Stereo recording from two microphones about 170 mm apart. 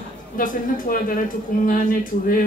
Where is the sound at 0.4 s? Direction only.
55° left (ahead or behind).